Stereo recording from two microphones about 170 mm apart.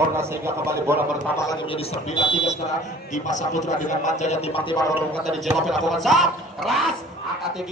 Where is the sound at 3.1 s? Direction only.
45° left (ahead or behind).